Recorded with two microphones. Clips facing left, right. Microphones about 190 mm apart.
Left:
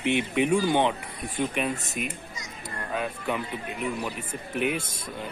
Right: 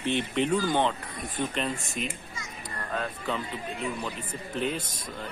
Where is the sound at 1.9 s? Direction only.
15° left (ahead or behind).